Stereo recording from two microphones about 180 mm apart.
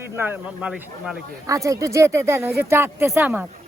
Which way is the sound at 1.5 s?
15° right (ahead or behind).